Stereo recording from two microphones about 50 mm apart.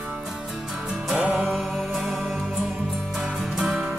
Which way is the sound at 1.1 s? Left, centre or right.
Centre.